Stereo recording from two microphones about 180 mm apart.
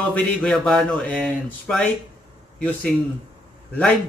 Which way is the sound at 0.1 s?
5° left (ahead or behind).